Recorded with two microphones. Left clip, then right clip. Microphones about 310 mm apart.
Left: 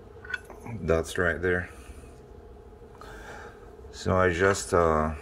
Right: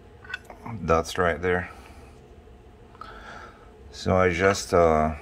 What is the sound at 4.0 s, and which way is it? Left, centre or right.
Speech, centre.